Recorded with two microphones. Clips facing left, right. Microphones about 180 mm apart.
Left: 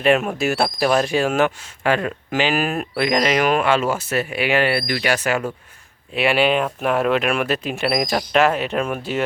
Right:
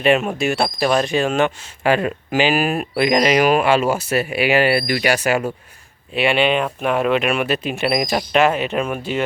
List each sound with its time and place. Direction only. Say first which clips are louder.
0.0 s speech: right 1 dB; centre (ahead or behind)
1.8 s speech: right 2 dB; 10° right (ahead or behind)
6.1 s speech: right 1 dB; 5° left (ahead or behind)